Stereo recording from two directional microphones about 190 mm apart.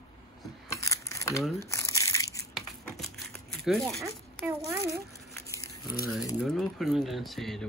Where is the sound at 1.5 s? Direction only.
15° left (ahead or behind).